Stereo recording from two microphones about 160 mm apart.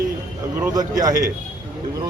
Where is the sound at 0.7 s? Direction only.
25° right (ahead or behind).